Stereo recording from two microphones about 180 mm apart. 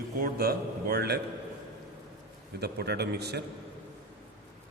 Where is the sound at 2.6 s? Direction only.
65° right (ahead or behind).